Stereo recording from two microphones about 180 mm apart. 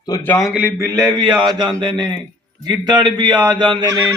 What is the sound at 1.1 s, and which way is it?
A man's voice, 25° right (ahead or behind).